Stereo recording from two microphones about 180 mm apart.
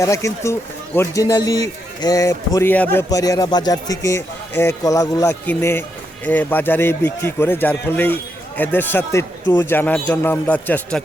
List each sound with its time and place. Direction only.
0.0 s a man's voice: 15° left (ahead or behind)